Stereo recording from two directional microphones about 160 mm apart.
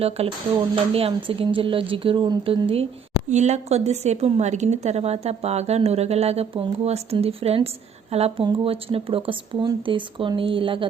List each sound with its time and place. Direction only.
0.2 s a woman's voice: 40° right (ahead or behind)
3.2 s a woman's voice: 45° right (ahead or behind)